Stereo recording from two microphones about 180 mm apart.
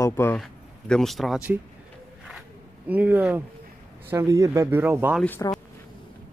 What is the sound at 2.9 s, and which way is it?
Speech, 10° right (ahead or behind).